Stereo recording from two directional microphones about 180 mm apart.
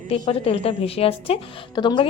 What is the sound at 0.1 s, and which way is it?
A woman's voice, 30° left (ahead or behind).